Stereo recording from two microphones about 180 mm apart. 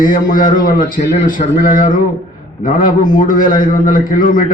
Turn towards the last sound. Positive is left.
turn(degrees=50)  # may be behind; listen again after turning